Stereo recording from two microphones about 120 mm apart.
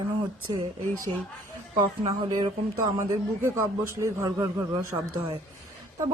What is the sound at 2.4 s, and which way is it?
A man's voice, 30° right (ahead or behind).